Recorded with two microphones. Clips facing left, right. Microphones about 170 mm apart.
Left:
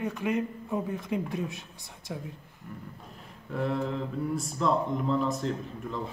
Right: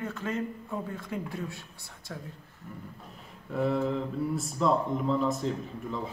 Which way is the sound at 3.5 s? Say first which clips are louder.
Right 2 dB; centre (ahead or behind).